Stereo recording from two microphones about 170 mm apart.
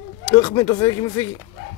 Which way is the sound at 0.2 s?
20° left (ahead or behind).